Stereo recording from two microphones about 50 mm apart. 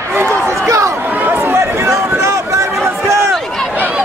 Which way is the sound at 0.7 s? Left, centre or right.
Right.